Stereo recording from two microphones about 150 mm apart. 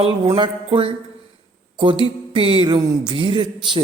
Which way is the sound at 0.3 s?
30° right (ahead or behind).